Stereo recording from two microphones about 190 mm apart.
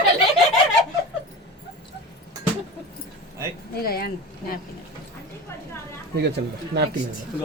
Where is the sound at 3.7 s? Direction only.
55° left (ahead or behind).